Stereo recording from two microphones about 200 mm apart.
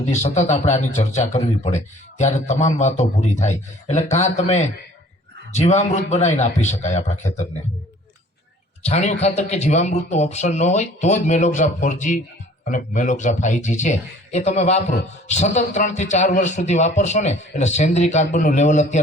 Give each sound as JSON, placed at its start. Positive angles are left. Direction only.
{"t": 0.0, "sound": "a man's voice", "side_deg": 35}
{"t": 8.8, "sound": "a man's voice", "side_deg": 35}